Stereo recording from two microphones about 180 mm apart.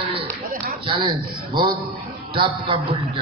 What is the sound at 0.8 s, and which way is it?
A man's voice, 25° right (ahead or behind).